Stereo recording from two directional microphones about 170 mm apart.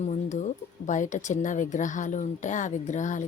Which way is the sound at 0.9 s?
50° left (ahead or behind).